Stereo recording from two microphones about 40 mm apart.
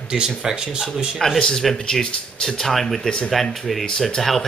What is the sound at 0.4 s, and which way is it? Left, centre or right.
Speech, centre.